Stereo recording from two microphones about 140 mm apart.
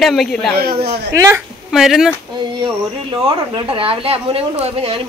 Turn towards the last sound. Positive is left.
turn(degrees=-45)  # may be behind; listen again after turning